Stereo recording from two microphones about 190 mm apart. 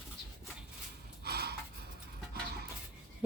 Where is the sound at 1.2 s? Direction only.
55° right (ahead or behind).